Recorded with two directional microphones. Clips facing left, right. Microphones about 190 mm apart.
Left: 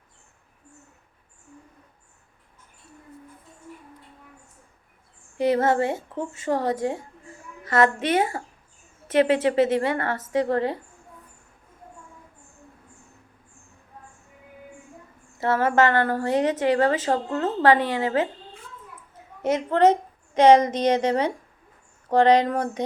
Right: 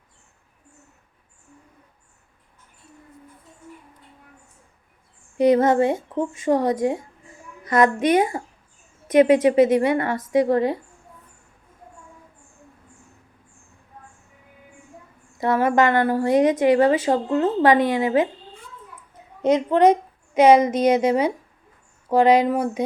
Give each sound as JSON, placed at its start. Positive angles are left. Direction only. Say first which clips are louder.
{"t": 5.4, "sound": "a woman's voice", "louder": "right 5 dB", "side_deg": -15}
{"t": 15.4, "sound": "a woman's voice", "louder": "right 2 dB", "side_deg": -15}
{"t": 19.4, "sound": "a woman's voice", "louder": "right 3 dB", "side_deg": -15}